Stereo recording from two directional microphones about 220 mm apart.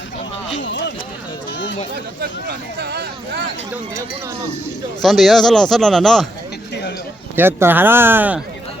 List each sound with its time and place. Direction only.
0.6 s a sound: 55° left (ahead or behind)
1.5 s chatter: 55° left (ahead or behind)
2.5 s speech: 50° right (ahead or behind)
5.0 s speech: centre (ahead or behind)
7.3 s speech: 10° right (ahead or behind)